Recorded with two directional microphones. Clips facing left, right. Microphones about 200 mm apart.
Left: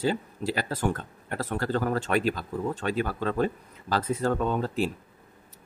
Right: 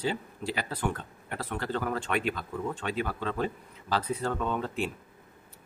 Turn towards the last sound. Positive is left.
turn(degrees=40)  # may be behind; listen again after turning